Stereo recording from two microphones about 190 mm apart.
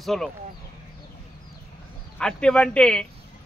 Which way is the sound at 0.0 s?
Centre (ahead or behind).